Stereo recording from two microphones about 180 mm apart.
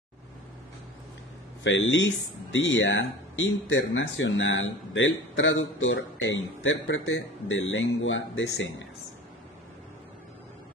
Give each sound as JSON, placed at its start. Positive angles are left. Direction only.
{"t": 1.6, "sound": "speech", "side_deg": 85}